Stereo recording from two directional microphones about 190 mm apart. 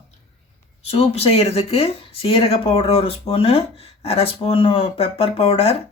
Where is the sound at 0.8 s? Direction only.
30° left (ahead or behind).